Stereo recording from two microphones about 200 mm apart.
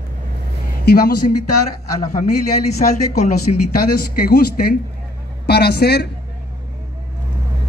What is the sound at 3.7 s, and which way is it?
Speech, 50° left (ahead or behind).